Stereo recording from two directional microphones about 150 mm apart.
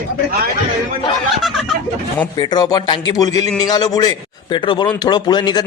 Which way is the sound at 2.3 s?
30° left (ahead or behind).